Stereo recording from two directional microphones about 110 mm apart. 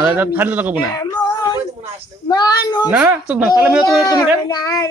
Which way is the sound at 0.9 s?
35° left (ahead or behind).